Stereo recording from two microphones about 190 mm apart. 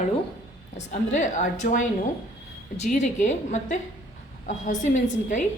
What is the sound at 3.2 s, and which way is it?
Speech, 40° left (ahead or behind).